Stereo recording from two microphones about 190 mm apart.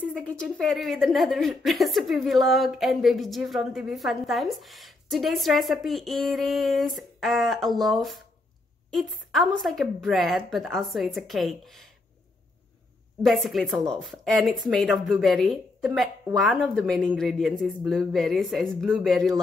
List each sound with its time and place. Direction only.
0.0 s a woman's voice: 5° left (ahead or behind)
13.2 s a woman's voice: centre (ahead or behind)